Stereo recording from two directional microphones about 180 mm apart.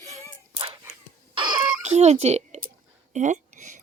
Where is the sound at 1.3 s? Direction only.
30° right (ahead or behind).